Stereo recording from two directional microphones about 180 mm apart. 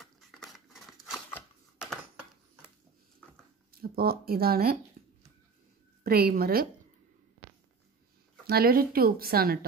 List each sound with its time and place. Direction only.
0.0 s scissors: centre (ahead or behind)
1.1 s a sound: centre (ahead or behind)
3.8 s speech: 55° right (ahead or behind)
5.0 s a sound: 50° right (ahead or behind)
6.0 s speech: 55° right (ahead or behind)
8.5 s speech: 55° right (ahead or behind)